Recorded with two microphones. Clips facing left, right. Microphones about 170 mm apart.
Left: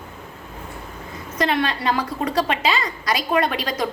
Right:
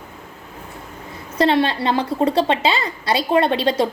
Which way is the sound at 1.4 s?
30° right (ahead or behind).